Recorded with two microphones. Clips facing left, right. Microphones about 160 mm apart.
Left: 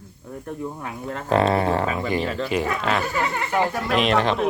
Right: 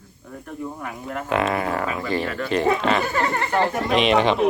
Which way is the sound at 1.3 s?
35° left (ahead or behind).